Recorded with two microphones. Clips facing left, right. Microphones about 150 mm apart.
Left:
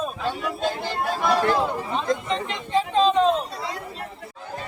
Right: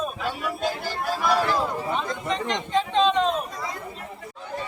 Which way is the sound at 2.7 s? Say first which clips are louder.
Left 2 dB; 5° left (ahead or behind).